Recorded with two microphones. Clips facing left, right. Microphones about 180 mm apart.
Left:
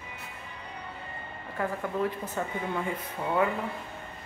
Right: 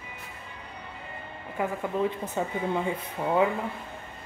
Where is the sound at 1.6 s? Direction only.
15° right (ahead or behind).